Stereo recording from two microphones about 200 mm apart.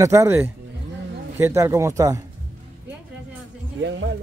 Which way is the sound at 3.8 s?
65° right (ahead or behind).